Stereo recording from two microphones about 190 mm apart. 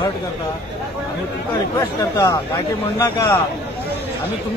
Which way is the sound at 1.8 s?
15° left (ahead or behind).